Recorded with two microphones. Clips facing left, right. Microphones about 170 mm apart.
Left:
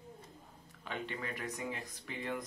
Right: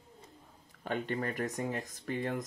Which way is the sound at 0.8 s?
50° right (ahead or behind).